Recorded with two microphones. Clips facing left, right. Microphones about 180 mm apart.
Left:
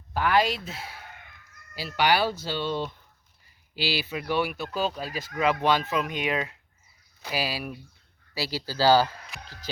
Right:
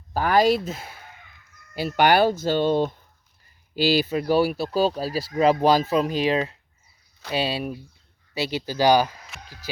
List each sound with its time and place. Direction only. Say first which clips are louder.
0.1 s speech: right 5 dB; 40° right (ahead or behind); by 9.1 s 15° right (ahead or behind)